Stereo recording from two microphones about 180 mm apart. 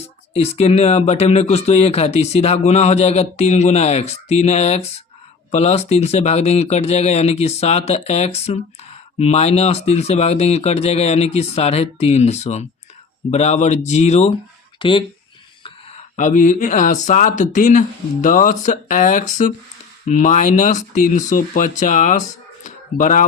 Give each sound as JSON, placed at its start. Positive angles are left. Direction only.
{"t": 0.3, "sound": "speech", "side_deg": 35}
{"t": 16.1, "sound": "speech", "side_deg": 40}
{"t": 22.6, "sound": "a sound", "side_deg": 45}